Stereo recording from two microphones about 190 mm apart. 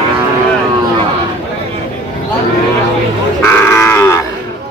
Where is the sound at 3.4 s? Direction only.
10° left (ahead or behind).